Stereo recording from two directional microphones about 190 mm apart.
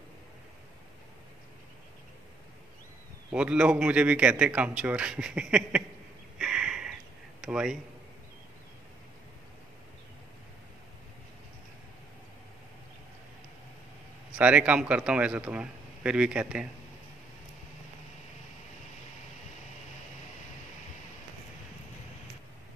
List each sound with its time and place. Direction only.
3.3 s a man's voice: 5° right (ahead or behind)
6.3 s a sound: 5° right (ahead or behind)
7.4 s a man's voice: 5° right (ahead or behind)
14.4 s a man's voice: 5° right (ahead or behind)